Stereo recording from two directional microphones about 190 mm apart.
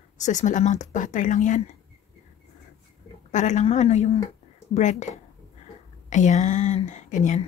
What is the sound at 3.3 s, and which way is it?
A woman's voice, 40° left (ahead or behind).